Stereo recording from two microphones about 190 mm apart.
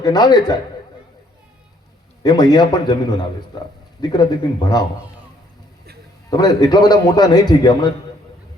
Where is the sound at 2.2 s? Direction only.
20° left (ahead or behind).